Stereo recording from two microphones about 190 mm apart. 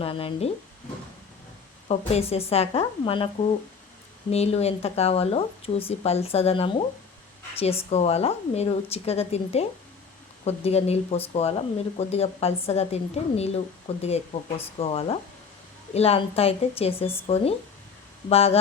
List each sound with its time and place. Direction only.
0.0 s speech: 30° left (ahead or behind)
1.9 s speech: 35° left (ahead or behind)
4.3 s speech: 35° left (ahead or behind)